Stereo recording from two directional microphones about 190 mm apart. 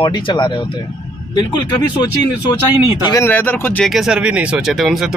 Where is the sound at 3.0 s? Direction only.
15° left (ahead or behind).